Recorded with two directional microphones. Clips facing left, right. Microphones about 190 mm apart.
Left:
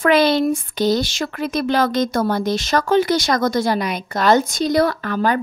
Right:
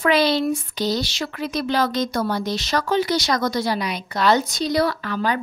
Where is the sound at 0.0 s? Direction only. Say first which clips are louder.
Left 3 dB; 50° left (ahead or behind).